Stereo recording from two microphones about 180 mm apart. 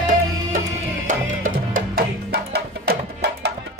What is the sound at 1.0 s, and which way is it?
Music, 50° right (ahead or behind).